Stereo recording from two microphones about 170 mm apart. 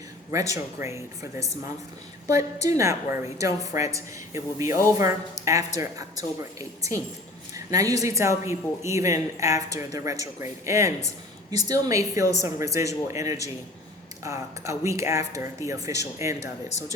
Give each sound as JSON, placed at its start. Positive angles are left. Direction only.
{"t": 0.3, "sound": "a woman's voice", "side_deg": -20}